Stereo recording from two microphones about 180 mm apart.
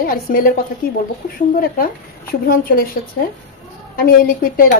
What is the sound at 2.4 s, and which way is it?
Speech, 55° left (ahead or behind).